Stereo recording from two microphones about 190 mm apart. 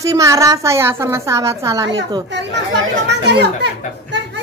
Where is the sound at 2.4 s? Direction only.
65° right (ahead or behind).